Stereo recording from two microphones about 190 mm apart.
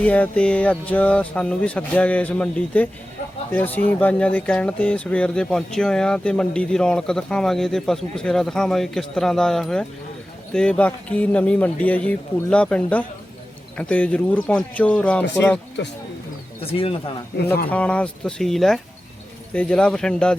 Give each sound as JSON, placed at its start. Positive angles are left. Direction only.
{"t": 0.0, "sound": "speech", "side_deg": 5}
{"t": 16.6, "sound": "speech", "side_deg": 30}
{"t": 17.7, "sound": "speech", "side_deg": 5}